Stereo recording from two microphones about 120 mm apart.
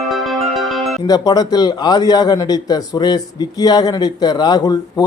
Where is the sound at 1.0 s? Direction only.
35° left (ahead or behind).